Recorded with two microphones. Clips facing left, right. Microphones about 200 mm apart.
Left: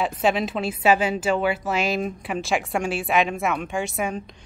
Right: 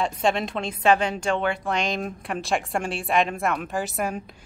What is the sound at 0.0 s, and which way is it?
A woman's voice, 5° left (ahead or behind).